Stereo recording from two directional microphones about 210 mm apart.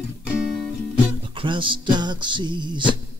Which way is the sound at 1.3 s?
25° right (ahead or behind).